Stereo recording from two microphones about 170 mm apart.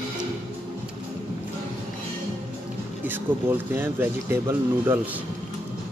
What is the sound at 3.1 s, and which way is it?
Speech, 10° right (ahead or behind).